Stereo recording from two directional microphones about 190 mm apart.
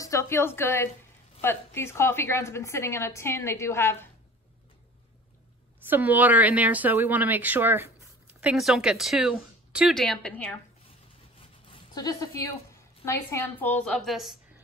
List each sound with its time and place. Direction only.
0.0 s a woman's voice: 15° left (ahead or behind)
5.9 s a woman's voice: 10° right (ahead or behind); by 10.6 s 10° left (ahead or behind)
11.7 s a woman's voice: 20° left (ahead or behind); by 14.3 s centre (ahead or behind)